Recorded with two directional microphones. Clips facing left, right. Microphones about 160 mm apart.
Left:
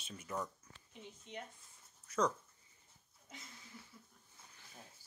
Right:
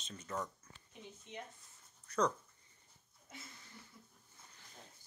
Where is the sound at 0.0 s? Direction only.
10° left (ahead or behind).